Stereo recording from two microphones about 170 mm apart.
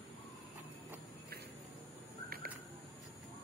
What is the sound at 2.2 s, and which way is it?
Bird, 60° right (ahead or behind).